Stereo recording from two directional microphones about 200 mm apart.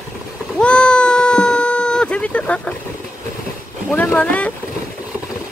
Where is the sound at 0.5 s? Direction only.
5° left (ahead or behind).